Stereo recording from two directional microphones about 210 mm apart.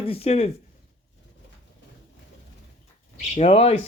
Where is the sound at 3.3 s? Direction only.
30° left (ahead or behind).